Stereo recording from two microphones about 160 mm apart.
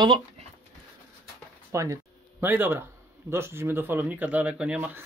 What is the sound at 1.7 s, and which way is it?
Speech, 20° right (ahead or behind).